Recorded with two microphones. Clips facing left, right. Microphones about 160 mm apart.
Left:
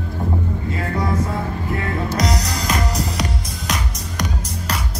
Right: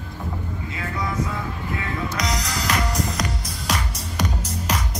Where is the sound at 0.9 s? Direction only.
40° left (ahead or behind).